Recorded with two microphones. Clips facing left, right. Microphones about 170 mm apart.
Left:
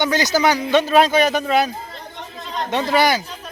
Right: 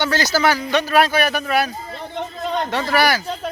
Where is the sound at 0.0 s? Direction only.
20° left (ahead or behind).